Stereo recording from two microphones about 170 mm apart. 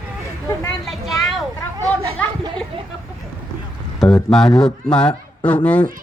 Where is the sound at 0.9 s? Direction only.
Centre (ahead or behind).